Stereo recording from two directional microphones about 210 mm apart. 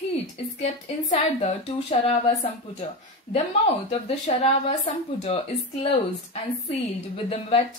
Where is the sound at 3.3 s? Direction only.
30° left (ahead or behind).